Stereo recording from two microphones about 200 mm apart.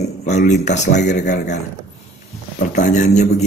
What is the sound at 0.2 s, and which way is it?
Speech, 35° left (ahead or behind).